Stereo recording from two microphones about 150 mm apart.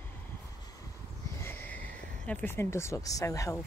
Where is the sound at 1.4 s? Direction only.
15° left (ahead or behind).